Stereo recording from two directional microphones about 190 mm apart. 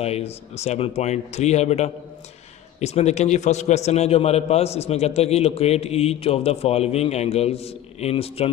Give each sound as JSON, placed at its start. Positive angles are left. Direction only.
{"t": 0.0, "sound": "a man's voice", "side_deg": 35}